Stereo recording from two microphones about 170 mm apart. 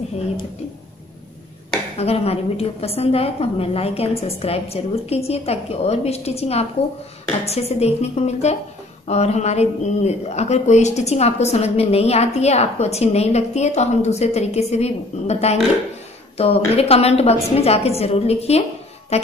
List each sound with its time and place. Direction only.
1.7 s a woman's voice: 35° left (ahead or behind)